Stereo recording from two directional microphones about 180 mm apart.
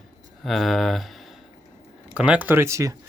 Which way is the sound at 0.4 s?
Centre (ahead or behind).